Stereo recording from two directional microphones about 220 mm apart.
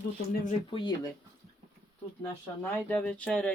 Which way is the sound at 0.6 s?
20° left (ahead or behind).